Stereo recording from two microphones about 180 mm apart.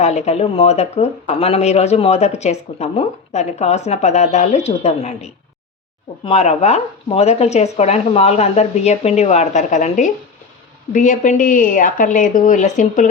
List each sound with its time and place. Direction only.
0.0 s a woman's voice: 40° left (ahead or behind)